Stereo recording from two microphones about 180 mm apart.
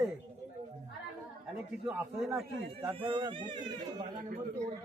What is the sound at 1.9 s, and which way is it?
Speech, centre (ahead or behind).